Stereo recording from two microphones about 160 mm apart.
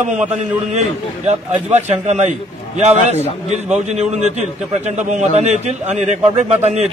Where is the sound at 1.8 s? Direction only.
45° right (ahead or behind).